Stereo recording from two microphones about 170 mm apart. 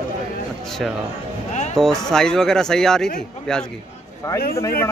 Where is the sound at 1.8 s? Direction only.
5° left (ahead or behind).